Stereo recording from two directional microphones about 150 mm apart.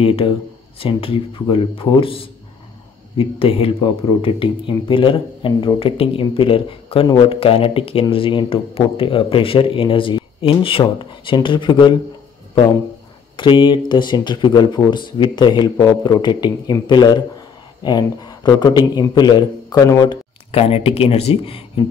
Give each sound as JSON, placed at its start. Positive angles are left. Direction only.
{"t": 0.0, "sound": "speech", "side_deg": 40}
{"t": 13.4, "sound": "a man's voice", "side_deg": 30}
{"t": 20.5, "sound": "speech", "side_deg": 40}